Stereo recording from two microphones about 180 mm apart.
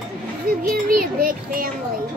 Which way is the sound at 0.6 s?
50° right (ahead or behind).